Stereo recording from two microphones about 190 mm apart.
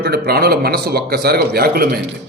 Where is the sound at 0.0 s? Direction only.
55° right (ahead or behind).